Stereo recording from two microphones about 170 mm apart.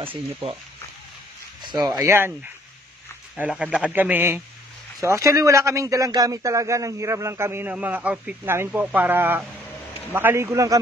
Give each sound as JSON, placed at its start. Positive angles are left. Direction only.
{"t": 1.8, "sound": "speech", "side_deg": -15}